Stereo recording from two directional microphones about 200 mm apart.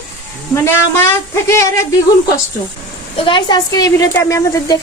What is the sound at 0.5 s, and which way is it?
A woman's voice, 15° left (ahead or behind).